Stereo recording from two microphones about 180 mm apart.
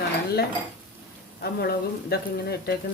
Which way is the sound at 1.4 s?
60° left (ahead or behind).